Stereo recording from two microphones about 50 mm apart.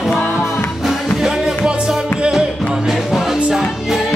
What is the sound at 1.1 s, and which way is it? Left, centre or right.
Music, centre.